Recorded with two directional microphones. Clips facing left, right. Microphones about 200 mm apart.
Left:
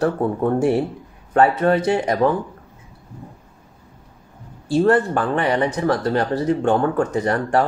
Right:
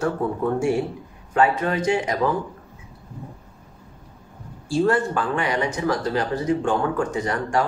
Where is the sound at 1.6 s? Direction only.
35° left (ahead or behind).